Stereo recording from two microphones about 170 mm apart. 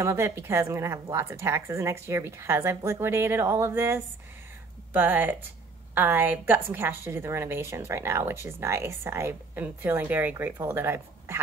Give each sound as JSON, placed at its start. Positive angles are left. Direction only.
{"t": 0.0, "sound": "a woman's voice", "side_deg": -15}